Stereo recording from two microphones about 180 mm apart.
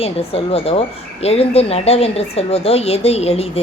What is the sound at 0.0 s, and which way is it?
Speech, 35° left (ahead or behind).